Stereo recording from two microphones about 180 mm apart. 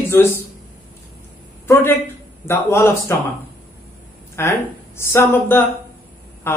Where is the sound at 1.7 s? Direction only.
10° left (ahead or behind).